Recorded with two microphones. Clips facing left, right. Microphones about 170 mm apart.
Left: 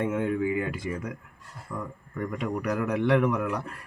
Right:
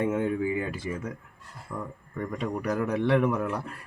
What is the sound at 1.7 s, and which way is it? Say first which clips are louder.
Speech: left 1 dB; 15° right (ahead or behind).